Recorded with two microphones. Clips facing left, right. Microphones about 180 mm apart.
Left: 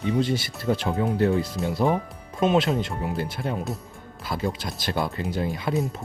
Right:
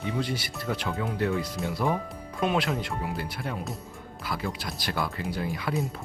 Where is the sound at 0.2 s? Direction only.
25° left (ahead or behind).